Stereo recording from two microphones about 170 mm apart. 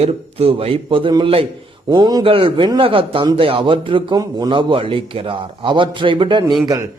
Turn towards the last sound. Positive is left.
turn(degrees=-25)  # may be behind; listen again after turning